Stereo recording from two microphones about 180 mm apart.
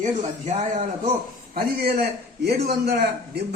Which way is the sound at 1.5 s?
60° right (ahead or behind).